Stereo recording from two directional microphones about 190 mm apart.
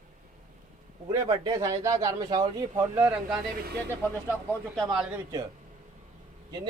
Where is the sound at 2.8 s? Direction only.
5° right (ahead or behind).